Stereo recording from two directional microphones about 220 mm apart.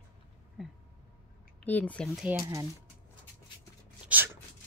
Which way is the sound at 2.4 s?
15° right (ahead or behind).